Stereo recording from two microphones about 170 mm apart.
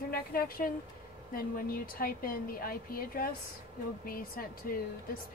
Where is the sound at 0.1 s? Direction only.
60° left (ahead or behind).